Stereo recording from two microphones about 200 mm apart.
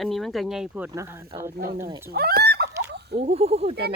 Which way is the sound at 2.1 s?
50° right (ahead or behind).